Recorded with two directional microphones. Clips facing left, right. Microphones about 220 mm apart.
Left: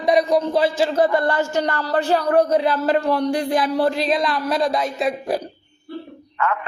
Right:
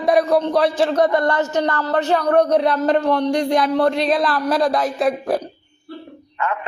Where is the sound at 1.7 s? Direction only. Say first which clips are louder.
Right 1 dB; 35° left (ahead or behind).